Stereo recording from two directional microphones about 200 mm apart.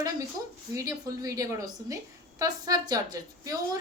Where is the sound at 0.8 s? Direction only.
15° right (ahead or behind).